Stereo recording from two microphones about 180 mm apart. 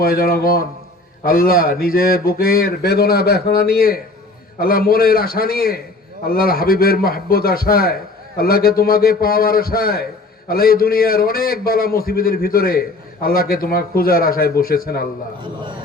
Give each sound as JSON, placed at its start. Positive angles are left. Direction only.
{"t": 0.0, "sound": "speech", "side_deg": 55}